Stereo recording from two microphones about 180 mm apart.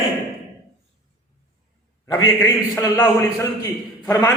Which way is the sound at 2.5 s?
20° left (ahead or behind).